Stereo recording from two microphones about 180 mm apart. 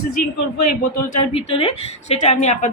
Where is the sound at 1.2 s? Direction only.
35° left (ahead or behind).